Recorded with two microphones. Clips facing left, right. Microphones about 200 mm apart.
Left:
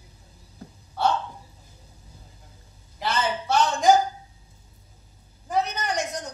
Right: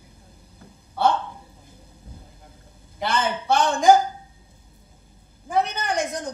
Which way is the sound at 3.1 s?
55° right (ahead or behind).